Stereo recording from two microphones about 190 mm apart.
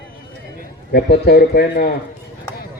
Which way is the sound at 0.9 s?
60° left (ahead or behind).